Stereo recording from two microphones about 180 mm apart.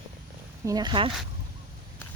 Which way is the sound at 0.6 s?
20° right (ahead or behind).